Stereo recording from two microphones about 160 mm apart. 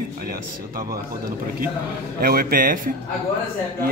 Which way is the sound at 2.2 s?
65° right (ahead or behind).